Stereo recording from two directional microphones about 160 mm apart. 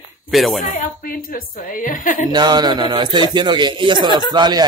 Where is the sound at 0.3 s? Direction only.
Centre (ahead or behind).